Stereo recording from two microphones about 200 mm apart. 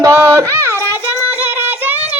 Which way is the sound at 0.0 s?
15° right (ahead or behind).